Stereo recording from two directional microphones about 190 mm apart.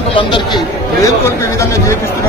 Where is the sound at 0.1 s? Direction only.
25° left (ahead or behind).